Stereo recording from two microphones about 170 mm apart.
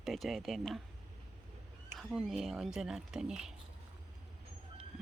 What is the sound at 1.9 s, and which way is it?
Speech, centre (ahead or behind).